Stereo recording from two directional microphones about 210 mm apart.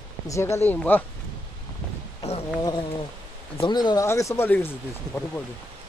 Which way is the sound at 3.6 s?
20° left (ahead or behind).